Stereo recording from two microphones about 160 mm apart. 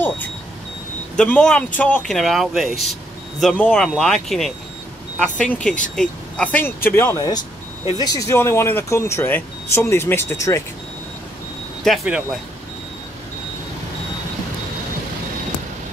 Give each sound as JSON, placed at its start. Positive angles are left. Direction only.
{"t": 1.1, "sound": "speech", "side_deg": 5}
{"t": 11.8, "sound": "speech", "side_deg": 0}